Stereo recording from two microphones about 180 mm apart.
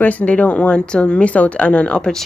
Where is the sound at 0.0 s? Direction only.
10° left (ahead or behind).